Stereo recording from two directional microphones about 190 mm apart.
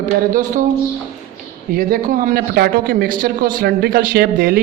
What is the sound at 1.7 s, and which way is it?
A man's voice, 50° right (ahead or behind).